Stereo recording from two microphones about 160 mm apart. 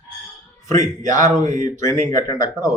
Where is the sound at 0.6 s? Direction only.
20° left (ahead or behind).